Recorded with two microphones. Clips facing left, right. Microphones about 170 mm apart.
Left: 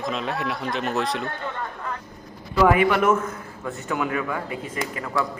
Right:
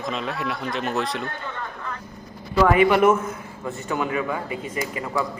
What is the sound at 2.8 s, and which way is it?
Speech, 15° right (ahead or behind).